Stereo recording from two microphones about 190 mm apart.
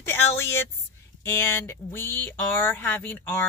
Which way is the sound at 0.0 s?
10° left (ahead or behind).